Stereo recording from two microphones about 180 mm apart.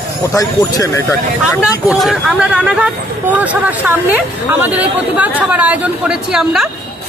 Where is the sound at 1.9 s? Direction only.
Centre (ahead or behind).